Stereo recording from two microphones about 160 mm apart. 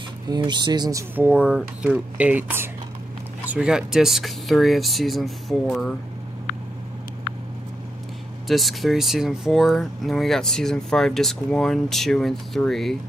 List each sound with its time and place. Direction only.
0.3 s speech: 30° right (ahead or behind)
1.1 s speech: 10° right (ahead or behind)
8.5 s speech: centre (ahead or behind)